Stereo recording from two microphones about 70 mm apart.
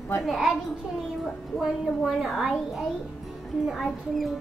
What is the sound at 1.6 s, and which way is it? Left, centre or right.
Speech, centre.